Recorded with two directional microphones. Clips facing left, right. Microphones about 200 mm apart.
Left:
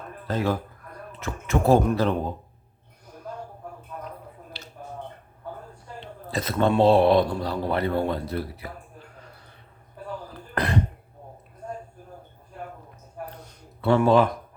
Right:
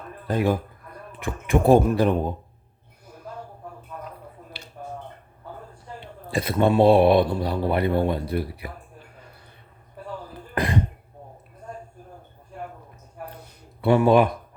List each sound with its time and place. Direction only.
0.3 s speech: 15° right (ahead or behind)
6.3 s speech: 10° right (ahead or behind)
10.5 s throat clearing: 10° right (ahead or behind)
13.8 s speech: 15° right (ahead or behind)